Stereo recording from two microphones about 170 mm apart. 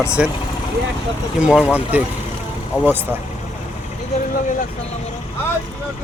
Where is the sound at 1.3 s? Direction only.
5° right (ahead or behind).